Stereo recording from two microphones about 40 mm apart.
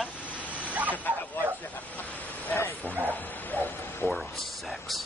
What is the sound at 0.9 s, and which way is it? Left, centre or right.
Speech, left.